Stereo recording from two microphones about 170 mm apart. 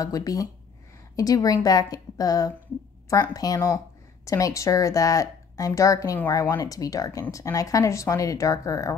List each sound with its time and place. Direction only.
0.0 s a woman's voice: 20° left (ahead or behind)